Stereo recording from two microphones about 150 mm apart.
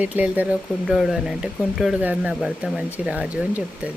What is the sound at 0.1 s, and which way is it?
Speech, 10° right (ahead or behind).